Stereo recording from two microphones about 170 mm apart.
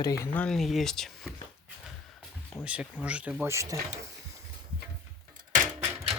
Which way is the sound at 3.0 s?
10° right (ahead or behind).